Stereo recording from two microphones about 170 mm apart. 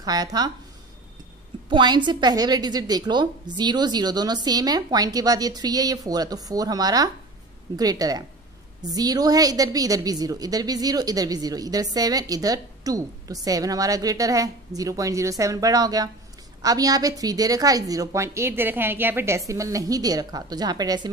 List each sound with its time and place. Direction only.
0.0 s a woman's voice: 20° right (ahead or behind)
1.7 s a woman's voice: 25° right (ahead or behind)